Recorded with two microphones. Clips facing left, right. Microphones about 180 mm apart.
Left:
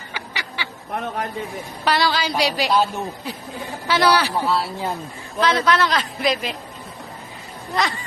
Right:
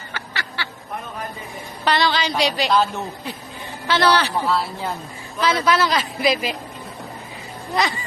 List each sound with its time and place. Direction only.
0.1 s duck: 15° left (ahead or behind)
0.9 s a sound: 70° left (ahead or behind)
1.8 s a woman's voice: 5° left (ahead or behind)